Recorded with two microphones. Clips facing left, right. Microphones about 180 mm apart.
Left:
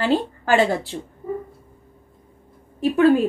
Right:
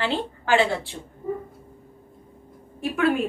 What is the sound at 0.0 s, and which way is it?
Speech, 40° left (ahead or behind).